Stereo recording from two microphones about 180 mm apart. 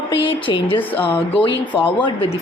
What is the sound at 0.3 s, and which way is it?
Speech, 30° left (ahead or behind).